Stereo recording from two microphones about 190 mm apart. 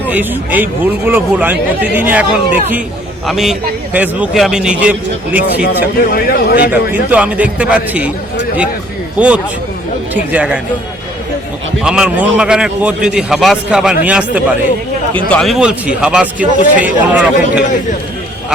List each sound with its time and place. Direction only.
0.1 s a man's voice: 10° right (ahead or behind)
6.1 s speech: 55° left (ahead or behind)
6.7 s speech: 5° right (ahead or behind)
9.1 s speech: 5° right (ahead or behind)
11.8 s a man's voice: 5° right (ahead or behind)